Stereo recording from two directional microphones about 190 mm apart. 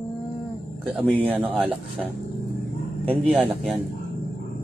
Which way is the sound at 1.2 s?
10° right (ahead or behind).